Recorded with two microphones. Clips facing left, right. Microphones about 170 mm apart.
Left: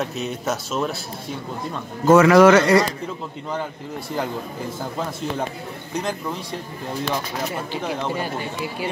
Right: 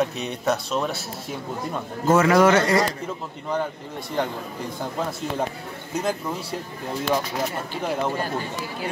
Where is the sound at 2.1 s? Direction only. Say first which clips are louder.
Left 5 dB; 90° left.